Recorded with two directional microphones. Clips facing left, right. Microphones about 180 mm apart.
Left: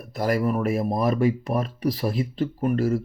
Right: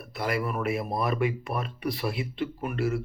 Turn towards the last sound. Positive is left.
turn(degrees=40)  # may be behind; listen again after turning